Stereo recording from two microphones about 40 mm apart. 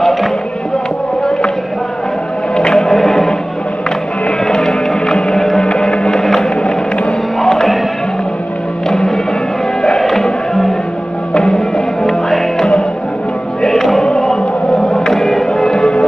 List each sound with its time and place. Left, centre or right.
0.0 s music: centre
2.7 s music: centre
4.5 s music: centre
7.4 s music: centre
8.8 s music: centre